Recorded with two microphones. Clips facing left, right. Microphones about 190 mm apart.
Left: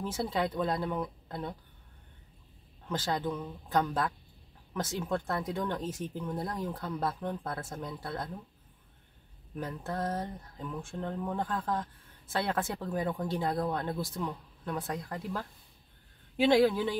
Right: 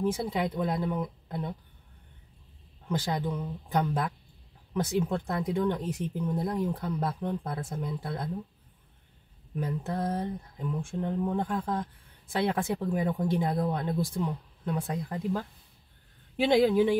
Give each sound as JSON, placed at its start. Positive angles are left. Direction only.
{"t": 0.0, "sound": "speech", "side_deg": -15}
{"t": 2.9, "sound": "speech", "side_deg": -15}
{"t": 9.6, "sound": "speech", "side_deg": -15}
{"t": 16.4, "sound": "speech", "side_deg": -20}